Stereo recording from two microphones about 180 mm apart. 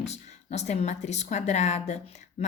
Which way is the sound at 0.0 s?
40° left (ahead or behind).